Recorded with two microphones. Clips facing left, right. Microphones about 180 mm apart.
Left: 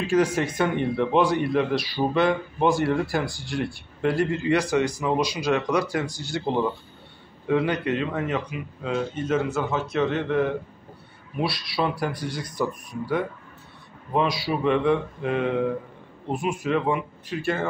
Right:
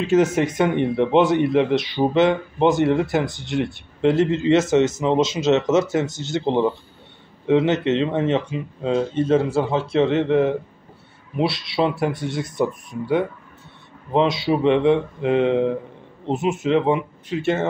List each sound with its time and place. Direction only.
0.0 s speech: 20° right (ahead or behind)